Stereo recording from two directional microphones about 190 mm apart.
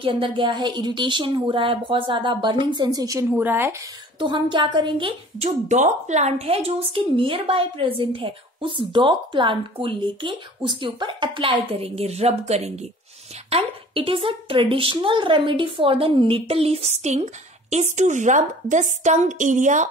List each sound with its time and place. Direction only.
0.0 s a woman's voice: 25° right (ahead or behind); by 3.7 s 10° right (ahead or behind)
4.2 s a woman's voice: 25° right (ahead or behind); by 19.9 s 40° right (ahead or behind)